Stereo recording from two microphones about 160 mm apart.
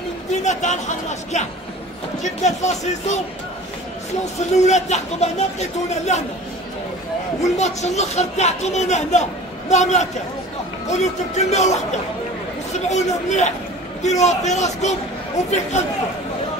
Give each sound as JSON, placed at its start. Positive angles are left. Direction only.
{"t": 0.3, "sound": "a man's voice", "side_deg": 45}
{"t": 4.4, "sound": "speech", "side_deg": 45}
{"t": 7.4, "sound": "speech", "side_deg": 45}
{"t": 12.8, "sound": "speech", "side_deg": 45}